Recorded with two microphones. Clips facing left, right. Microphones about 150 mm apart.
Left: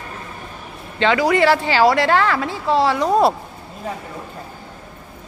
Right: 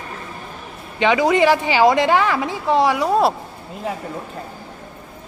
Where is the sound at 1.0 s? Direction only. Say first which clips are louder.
Right 1 dB; 20° right (ahead or behind).